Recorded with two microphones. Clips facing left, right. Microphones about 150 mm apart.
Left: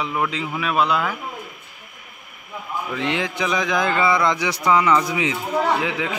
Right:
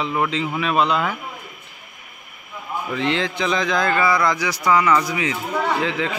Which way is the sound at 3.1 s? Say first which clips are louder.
Right 2 dB; 15° left (ahead or behind).